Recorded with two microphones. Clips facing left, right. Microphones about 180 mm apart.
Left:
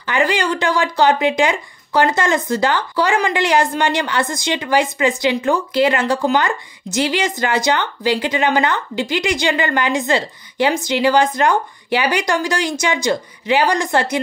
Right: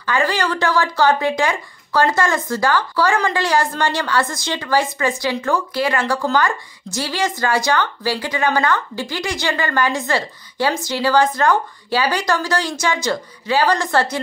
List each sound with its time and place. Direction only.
0.0 s speech: 20° left (ahead or behind)